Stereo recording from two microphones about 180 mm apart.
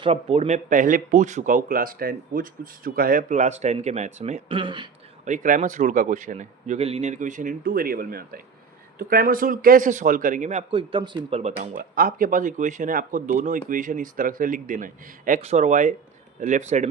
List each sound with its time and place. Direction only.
0.0 s speech: 35° right (ahead or behind)
5.2 s speech: 45° right (ahead or behind)
10.7 s speech: 25° right (ahead or behind)
11.5 s speech: 50° right (ahead or behind)